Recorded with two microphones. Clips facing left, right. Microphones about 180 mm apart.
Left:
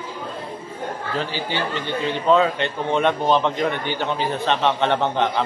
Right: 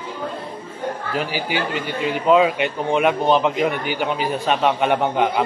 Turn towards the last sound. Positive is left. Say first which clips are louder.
# right 2 dB
turn(degrees=-10)  # may be behind; listen again after turning